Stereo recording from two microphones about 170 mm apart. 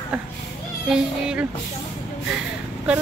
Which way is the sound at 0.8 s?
5° right (ahead or behind).